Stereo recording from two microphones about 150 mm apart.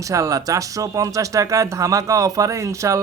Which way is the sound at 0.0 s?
20° right (ahead or behind).